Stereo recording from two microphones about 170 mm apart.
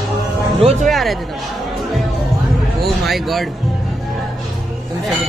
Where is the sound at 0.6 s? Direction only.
40° right (ahead or behind).